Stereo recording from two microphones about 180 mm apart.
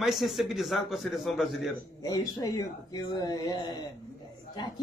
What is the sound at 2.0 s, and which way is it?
Speech, 20° left (ahead or behind).